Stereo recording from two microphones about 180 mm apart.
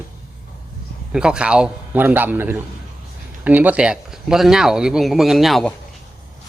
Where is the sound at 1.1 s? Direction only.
5° right (ahead or behind).